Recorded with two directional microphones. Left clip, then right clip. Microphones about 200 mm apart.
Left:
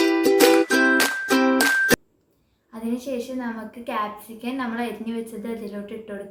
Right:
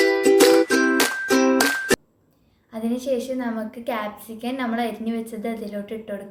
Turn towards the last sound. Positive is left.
turn(degrees=-25)  # may be behind; listen again after turning